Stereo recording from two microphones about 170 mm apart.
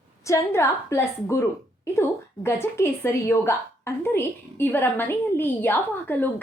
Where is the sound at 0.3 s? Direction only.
15° left (ahead or behind).